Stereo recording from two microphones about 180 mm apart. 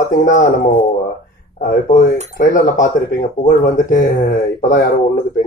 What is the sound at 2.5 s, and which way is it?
Speech, 45° left (ahead or behind).